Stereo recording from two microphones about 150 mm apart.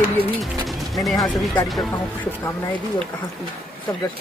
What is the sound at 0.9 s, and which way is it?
Speech, centre (ahead or behind).